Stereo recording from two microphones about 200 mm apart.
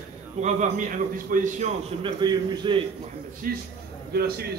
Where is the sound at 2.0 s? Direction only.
20° right (ahead or behind).